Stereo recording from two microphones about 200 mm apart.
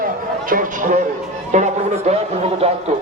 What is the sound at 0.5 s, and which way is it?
Speech, 40° right (ahead or behind).